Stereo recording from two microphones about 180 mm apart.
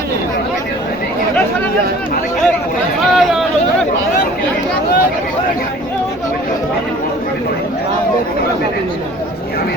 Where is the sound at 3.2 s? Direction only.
Centre (ahead or behind).